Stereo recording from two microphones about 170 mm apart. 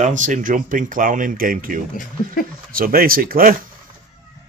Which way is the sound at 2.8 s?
60° right (ahead or behind).